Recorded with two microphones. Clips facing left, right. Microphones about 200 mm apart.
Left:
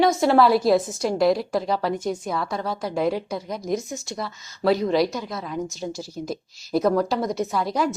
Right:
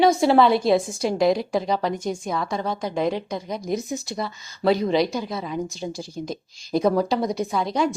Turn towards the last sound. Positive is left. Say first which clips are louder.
# right 1 dB
turn(degrees=5)  # may be behind; listen again after turning